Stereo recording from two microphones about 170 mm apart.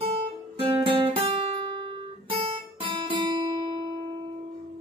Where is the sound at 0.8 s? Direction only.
30° right (ahead or behind).